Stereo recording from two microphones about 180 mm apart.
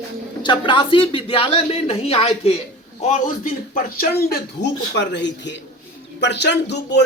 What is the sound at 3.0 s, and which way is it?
A man's voice, 50° left (ahead or behind).